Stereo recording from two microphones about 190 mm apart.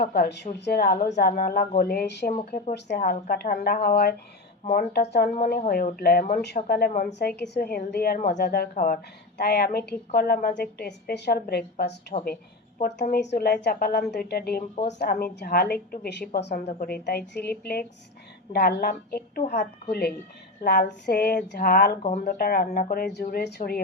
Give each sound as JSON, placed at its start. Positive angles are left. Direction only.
{"t": 0.0, "sound": "speech", "side_deg": 55}
{"t": 2.7, "sound": "a woman's voice", "side_deg": 65}
{"t": 3.0, "sound": "speech", "side_deg": 50}
{"t": 5.0, "sound": "a woman's voice", "side_deg": 60}
{"t": 5.3, "sound": "a woman's voice", "side_deg": 45}
{"t": 9.4, "sound": "a woman's voice", "side_deg": 60}